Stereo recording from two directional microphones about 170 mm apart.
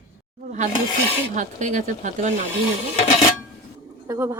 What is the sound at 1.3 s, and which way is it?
Speech, 45° right (ahead or behind).